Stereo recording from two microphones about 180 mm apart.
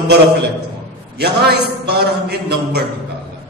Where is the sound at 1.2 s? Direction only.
65° right (ahead or behind).